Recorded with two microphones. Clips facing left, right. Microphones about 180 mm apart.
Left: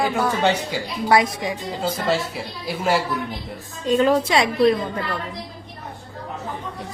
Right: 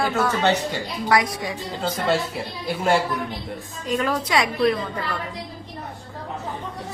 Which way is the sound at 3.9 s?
25° left (ahead or behind).